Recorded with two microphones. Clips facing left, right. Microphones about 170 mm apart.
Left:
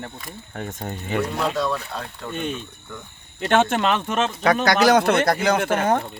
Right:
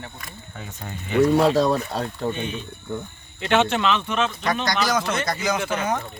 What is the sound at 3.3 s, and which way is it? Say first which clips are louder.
Speech: left 1 dB; 45° left (ahead or behind).